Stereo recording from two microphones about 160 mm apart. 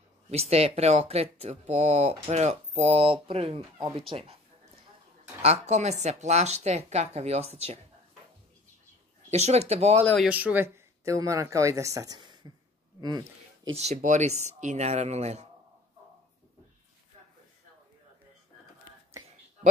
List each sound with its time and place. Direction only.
0.3 s speech: 40° right (ahead or behind)
5.4 s speech: 40° right (ahead or behind)
9.3 s speech: 40° right (ahead or behind)
10.2 s speech: 10° right (ahead or behind); by 13.3 s 25° right (ahead or behind)
13.7 s speech: 45° right (ahead or behind)